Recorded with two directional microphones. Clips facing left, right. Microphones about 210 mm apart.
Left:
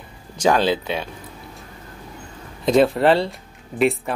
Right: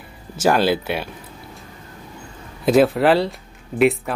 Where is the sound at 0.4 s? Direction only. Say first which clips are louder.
Right 1 dB; 10° right (ahead or behind).